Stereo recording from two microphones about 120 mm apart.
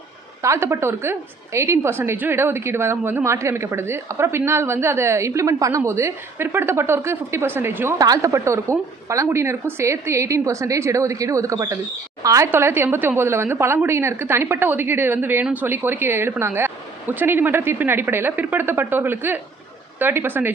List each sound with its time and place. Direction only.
0.4 s a woman's voice: 25° right (ahead or behind)
7.9 s a woman's voice: 30° right (ahead or behind)